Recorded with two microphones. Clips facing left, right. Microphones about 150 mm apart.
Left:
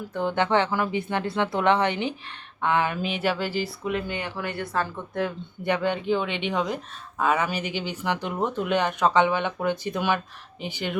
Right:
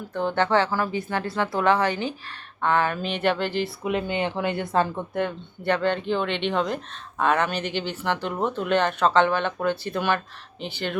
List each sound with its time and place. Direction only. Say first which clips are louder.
0.3 s a woman's voice: right 1 dB; 15° left (ahead or behind)
3.8 s speech: right 3 dB; 20° right (ahead or behind)
5.6 s speech: right 1 dB; 10° left (ahead or behind)